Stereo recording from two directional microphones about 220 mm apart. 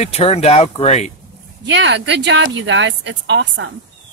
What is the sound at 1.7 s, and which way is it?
A woman's voice, 55° right (ahead or behind).